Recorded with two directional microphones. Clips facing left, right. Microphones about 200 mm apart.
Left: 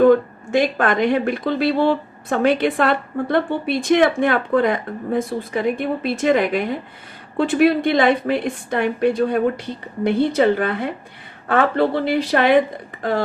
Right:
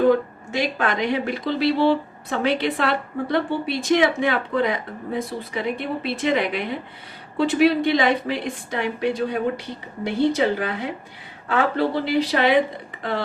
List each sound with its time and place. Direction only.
0.5 s speech: 50° left (ahead or behind)